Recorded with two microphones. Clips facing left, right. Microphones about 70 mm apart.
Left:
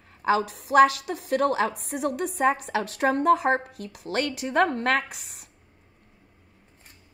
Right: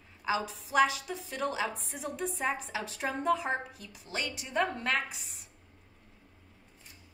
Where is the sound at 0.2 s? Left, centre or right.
Left.